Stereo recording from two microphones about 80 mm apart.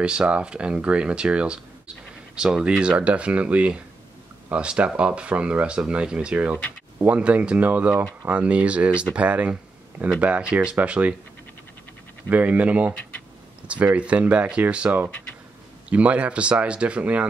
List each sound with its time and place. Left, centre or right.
0.0 s speech: centre
12.3 s speech: centre
13.9 s speech: centre